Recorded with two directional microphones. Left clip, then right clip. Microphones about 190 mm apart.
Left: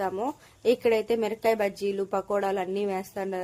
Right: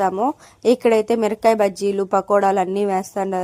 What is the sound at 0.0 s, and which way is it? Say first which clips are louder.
A woman's voice: right 10 dB; 40° right (ahead or behind).